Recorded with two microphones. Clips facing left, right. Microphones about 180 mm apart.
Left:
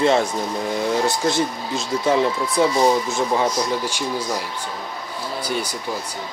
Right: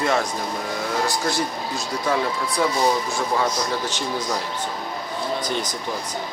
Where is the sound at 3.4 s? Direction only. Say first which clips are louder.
Left 2 dB; 10° left (ahead or behind).